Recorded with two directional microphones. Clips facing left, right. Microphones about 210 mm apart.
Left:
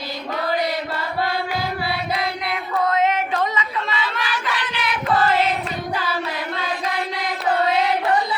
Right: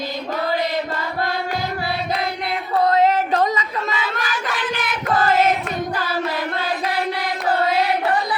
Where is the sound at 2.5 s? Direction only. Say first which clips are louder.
Right 4 dB; 35° right (ahead or behind).